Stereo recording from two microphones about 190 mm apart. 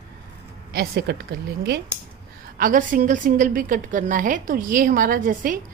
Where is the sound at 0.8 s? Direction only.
60° right (ahead or behind).